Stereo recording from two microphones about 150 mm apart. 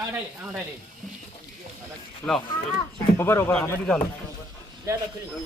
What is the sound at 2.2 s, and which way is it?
Speech, 15° left (ahead or behind).